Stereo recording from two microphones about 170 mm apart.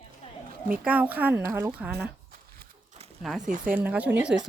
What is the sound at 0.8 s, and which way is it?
A woman's voice, 10° right (ahead or behind).